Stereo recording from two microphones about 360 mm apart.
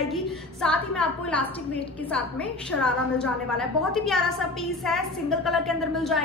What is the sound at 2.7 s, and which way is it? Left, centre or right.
A woman's voice, centre.